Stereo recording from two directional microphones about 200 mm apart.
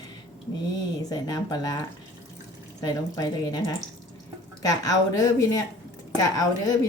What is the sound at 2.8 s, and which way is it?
A woman's voice, 15° left (ahead or behind).